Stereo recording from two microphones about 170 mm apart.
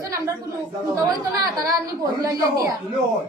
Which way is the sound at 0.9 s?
20° right (ahead or behind).